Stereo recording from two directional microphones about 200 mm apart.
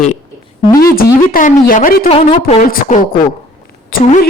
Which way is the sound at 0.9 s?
45° left (ahead or behind).